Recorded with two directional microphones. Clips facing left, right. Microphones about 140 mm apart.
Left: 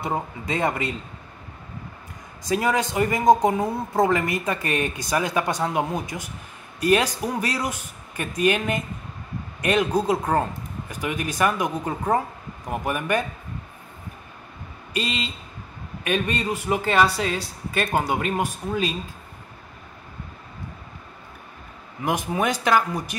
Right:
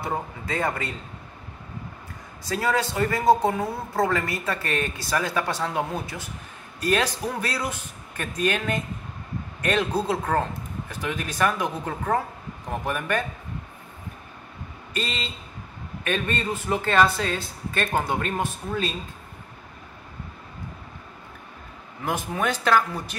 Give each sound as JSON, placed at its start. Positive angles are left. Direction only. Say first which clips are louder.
{"t": 0.0, "sound": "speech", "louder": "left 2 dB", "side_deg": 20}
{"t": 2.4, "sound": "a man's voice", "louder": "left 2 dB", "side_deg": 15}
{"t": 15.0, "sound": "a man's voice", "louder": "left 3 dB", "side_deg": 10}
{"t": 22.0, "sound": "a man's voice", "louder": "left 3 dB", "side_deg": 15}